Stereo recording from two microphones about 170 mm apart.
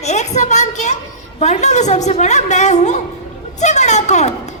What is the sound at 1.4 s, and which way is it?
A woman's voice, 45° left (ahead or behind).